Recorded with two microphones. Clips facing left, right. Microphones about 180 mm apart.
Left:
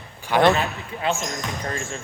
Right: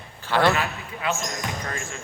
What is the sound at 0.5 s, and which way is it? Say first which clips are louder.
Speech: left 3 dB; 30° left (ahead or behind).